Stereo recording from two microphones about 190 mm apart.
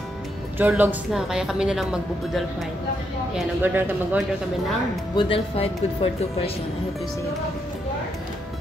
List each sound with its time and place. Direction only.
0.6 s speech: 10° right (ahead or behind)
5.1 s speech: 30° left (ahead or behind)